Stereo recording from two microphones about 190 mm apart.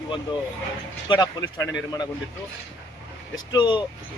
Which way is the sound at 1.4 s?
80° left.